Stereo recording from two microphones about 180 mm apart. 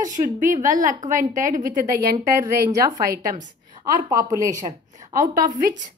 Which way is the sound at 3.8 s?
20° right (ahead or behind).